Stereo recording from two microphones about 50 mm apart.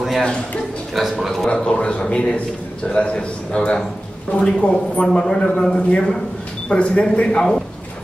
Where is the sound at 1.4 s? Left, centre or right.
Centre.